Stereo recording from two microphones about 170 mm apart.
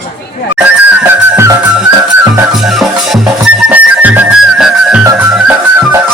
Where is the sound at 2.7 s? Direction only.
Centre (ahead or behind).